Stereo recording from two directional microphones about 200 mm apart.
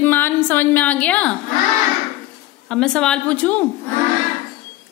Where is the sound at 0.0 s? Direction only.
10° left (ahead or behind).